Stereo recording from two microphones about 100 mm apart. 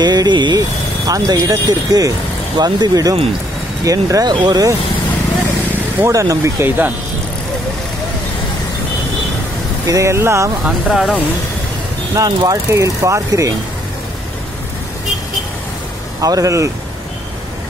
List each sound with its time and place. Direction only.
0.0 s speech: 45° right (ahead or behind)
5.9 s speech: 30° right (ahead or behind)
9.8 s speech: 30° right (ahead or behind)
10.9 s speech: centre (ahead or behind)
12.2 s speech: 35° right (ahead or behind)
16.2 s speech: 35° right (ahead or behind)